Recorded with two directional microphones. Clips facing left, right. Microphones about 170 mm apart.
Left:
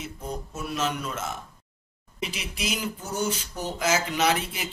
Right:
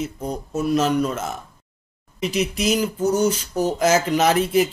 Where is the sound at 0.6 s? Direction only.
40° right (ahead or behind).